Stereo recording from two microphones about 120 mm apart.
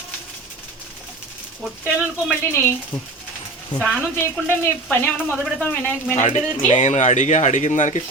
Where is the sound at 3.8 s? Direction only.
10° left (ahead or behind).